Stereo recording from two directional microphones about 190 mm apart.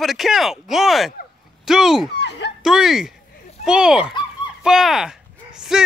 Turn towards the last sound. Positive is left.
turn(degrees=-5)  # may be behind; listen again after turning